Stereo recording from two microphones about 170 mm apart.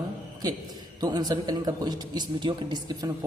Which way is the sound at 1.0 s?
25° right (ahead or behind).